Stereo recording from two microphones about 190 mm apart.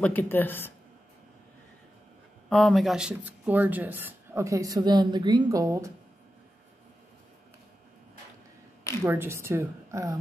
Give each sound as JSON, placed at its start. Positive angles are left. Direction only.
{"t": 0.0, "sound": "speech", "side_deg": 10}
{"t": 2.5, "sound": "speech", "side_deg": 0}
{"t": 9.0, "sound": "speech", "side_deg": -10}